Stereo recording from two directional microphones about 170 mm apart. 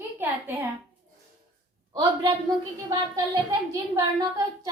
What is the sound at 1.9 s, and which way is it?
Speech, 30° right (ahead or behind).